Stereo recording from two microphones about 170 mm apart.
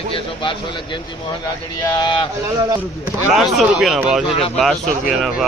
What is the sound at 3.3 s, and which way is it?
Speech, centre (ahead or behind).